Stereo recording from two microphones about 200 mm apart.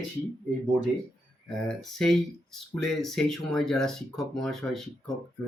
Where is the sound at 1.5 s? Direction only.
5° left (ahead or behind).